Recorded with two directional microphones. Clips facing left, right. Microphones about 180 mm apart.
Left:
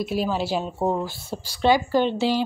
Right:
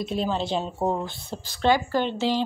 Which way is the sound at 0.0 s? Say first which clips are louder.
Left 2 dB; 5° left (ahead or behind).